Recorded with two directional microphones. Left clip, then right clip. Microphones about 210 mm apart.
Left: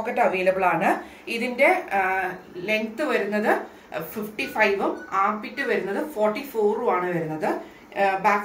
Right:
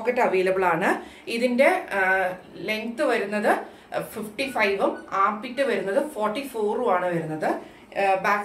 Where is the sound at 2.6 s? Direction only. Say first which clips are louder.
Even; 25° right (ahead or behind).